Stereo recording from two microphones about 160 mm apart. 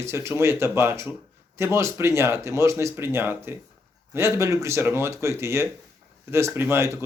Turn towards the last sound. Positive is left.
turn(degrees=-15)  # may be behind; listen again after turning